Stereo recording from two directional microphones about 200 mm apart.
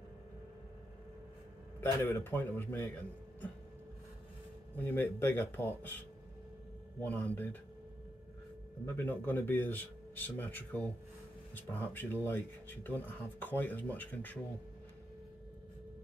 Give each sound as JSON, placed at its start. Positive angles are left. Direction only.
{"t": 1.8, "sound": "speech", "side_deg": 10}
{"t": 4.7, "sound": "speech", "side_deg": 10}
{"t": 7.0, "sound": "speech", "side_deg": 10}
{"t": 8.8, "sound": "speech", "side_deg": 10}